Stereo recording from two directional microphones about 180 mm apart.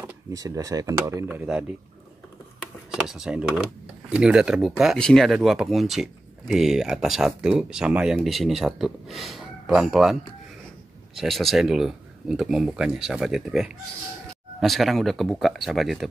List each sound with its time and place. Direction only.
0.0 s speech: 20° right (ahead or behind)
1.3 s speech: 5° right (ahead or behind)
11.1 s speech: centre (ahead or behind)